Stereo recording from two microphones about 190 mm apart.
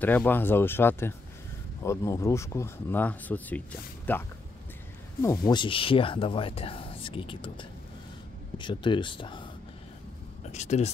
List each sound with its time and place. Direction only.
0.0 s speech: 10° left (ahead or behind)
5.2 s speech: 20° left (ahead or behind)
10.4 s speech: 35° left (ahead or behind)